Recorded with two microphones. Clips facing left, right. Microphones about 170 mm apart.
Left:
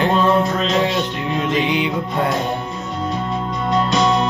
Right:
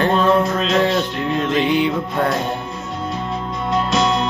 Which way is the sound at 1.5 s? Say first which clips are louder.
Right 4 dB; 15° left (ahead or behind).